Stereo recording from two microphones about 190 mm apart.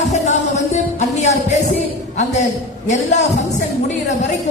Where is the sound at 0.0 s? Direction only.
35° left (ahead or behind).